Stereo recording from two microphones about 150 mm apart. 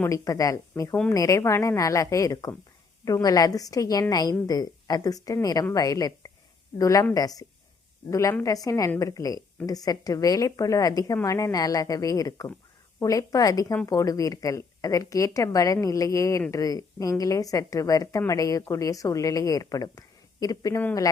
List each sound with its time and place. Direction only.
0.0 s a woman's voice: 20° left (ahead or behind)